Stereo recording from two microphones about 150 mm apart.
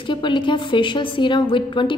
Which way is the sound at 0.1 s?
30° left (ahead or behind).